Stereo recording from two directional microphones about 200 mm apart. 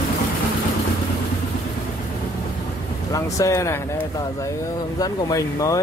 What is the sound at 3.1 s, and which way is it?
Speech, 15° left (ahead or behind).